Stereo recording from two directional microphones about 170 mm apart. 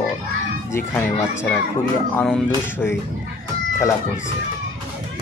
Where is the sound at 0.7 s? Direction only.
15° left (ahead or behind).